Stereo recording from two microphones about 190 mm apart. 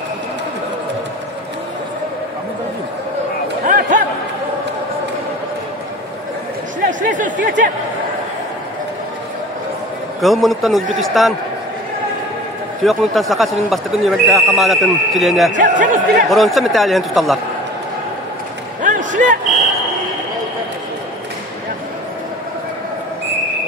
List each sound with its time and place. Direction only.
3.6 s chatter: 45° right (ahead or behind)
6.8 s a sound: 45° right (ahead or behind)
7.4 s speech: 45° right (ahead or behind)
10.2 s speech: centre (ahead or behind)
12.8 s speech: centre (ahead or behind)
15.5 s speech: 45° right (ahead or behind)
16.3 s speech: centre (ahead or behind)
18.8 s a sound: 40° right (ahead or behind)